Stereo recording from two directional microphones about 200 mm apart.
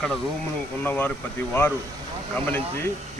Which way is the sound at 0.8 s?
10° left (ahead or behind).